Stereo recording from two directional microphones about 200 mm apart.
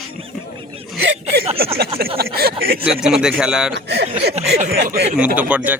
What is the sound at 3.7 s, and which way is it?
Speech, 60° right (ahead or behind).